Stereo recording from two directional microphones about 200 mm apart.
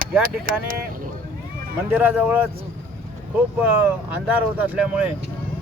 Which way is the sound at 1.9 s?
10° right (ahead or behind).